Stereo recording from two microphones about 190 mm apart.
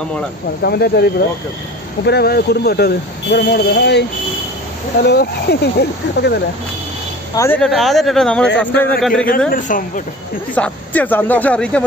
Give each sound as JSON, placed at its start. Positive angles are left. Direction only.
{"t": 0.6, "sound": "speech", "side_deg": 55}
{"t": 5.0, "sound": "speech", "side_deg": 60}
{"t": 7.3, "sound": "speech", "side_deg": 10}
{"t": 9.5, "sound": "speech", "side_deg": 45}
{"t": 10.5, "sound": "speech", "side_deg": 10}